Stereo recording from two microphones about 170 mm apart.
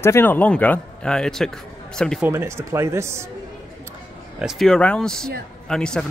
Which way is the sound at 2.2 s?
15° right (ahead or behind).